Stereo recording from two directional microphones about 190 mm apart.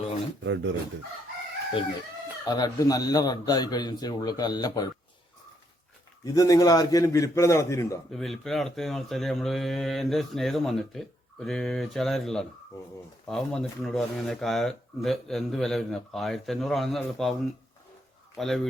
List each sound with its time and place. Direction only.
0.4 s speech: 75° right (ahead or behind)
2.5 s a man's voice: 20° left (ahead or behind)
6.2 s a man's voice: 20° left (ahead or behind)
8.1 s speech: centre (ahead or behind)
18.3 s speech: centre (ahead or behind)